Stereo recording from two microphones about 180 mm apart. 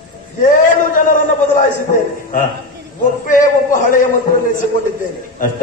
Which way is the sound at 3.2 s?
45° left (ahead or behind).